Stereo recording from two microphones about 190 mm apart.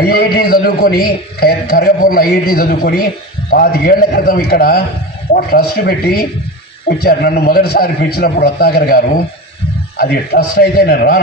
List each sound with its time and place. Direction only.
0.1 s a man's voice: 55° left (ahead or behind)